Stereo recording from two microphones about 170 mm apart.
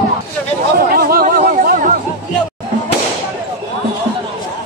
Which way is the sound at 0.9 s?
60° right (ahead or behind).